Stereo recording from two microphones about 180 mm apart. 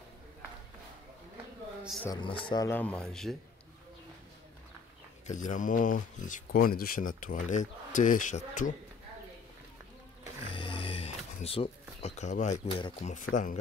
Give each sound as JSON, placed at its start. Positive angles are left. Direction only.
{"t": 2.0, "sound": "a man's voice", "side_deg": 30}
{"t": 2.7, "sound": "speech", "side_deg": 10}
{"t": 5.2, "sound": "speech", "side_deg": 45}
{"t": 10.5, "sound": "speech", "side_deg": 30}
{"t": 13.1, "sound": "speech", "side_deg": 45}